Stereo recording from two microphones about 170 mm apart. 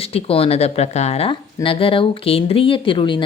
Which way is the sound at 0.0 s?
35° left (ahead or behind).